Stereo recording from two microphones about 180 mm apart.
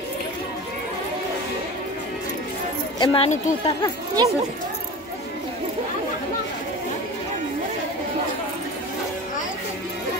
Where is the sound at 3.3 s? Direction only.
40° left (ahead or behind).